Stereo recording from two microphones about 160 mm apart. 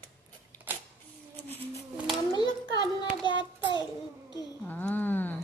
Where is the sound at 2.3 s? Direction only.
25° left (ahead or behind).